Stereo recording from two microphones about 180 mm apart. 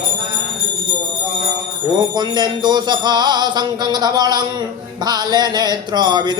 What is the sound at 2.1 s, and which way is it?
Jingle bell, 25° right (ahead or behind).